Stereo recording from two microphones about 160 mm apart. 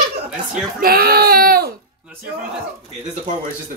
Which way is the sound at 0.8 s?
70° right (ahead or behind).